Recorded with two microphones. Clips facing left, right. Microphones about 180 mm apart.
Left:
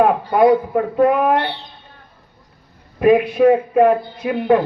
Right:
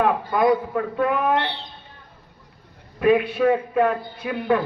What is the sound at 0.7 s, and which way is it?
Speech, 35° left (ahead or behind).